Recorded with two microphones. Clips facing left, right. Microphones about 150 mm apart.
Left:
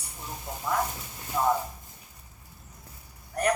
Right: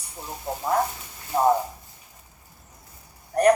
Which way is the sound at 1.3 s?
40° right (ahead or behind).